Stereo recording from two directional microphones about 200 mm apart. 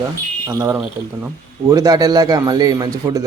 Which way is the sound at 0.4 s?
15° right (ahead or behind).